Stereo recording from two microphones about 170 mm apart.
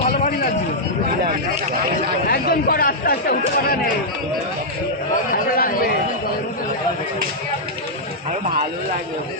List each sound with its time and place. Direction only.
0.0 s a sound: 50° left (ahead or behind)
2.2 s chatter: 60° left (ahead or behind)
5.3 s chatter: 55° left (ahead or behind)